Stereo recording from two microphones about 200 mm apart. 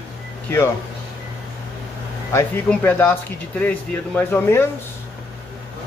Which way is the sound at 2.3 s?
10° left (ahead or behind).